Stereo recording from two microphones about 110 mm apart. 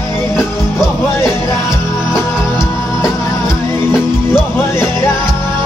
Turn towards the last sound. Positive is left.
turn(degrees=20)  # may be behind; listen again after turning